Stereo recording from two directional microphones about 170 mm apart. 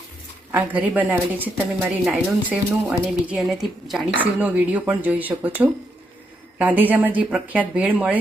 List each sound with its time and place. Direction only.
0.5 s speech: 10° right (ahead or behind)